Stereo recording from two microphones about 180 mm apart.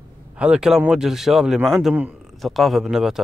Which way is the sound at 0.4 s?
5° right (ahead or behind).